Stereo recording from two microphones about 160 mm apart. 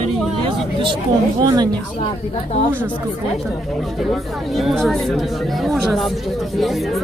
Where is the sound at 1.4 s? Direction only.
25° right (ahead or behind).